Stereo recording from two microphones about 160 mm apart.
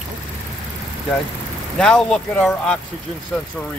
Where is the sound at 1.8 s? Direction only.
5° left (ahead or behind).